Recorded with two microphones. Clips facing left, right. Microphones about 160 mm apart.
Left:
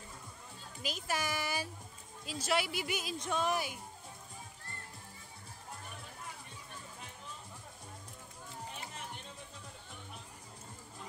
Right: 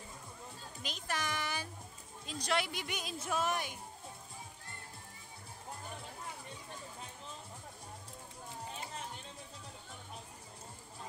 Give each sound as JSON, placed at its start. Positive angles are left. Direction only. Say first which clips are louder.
{"t": 0.8, "sound": "a child's voice", "louder": "left 2 dB", "side_deg": 5}